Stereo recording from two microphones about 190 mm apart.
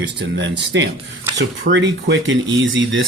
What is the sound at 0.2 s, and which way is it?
Speech, 65° right (ahead or behind).